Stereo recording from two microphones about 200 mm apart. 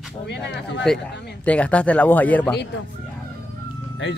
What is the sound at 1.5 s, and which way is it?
Speech, 5° left (ahead or behind).